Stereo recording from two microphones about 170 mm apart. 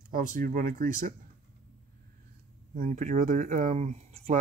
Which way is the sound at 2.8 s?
50° right (ahead or behind).